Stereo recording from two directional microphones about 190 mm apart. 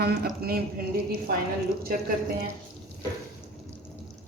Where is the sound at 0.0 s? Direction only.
55° right (ahead or behind).